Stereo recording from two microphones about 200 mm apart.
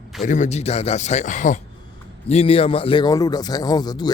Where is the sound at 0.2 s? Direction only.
35° left (ahead or behind).